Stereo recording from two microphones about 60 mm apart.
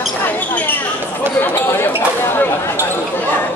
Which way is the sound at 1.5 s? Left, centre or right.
Left.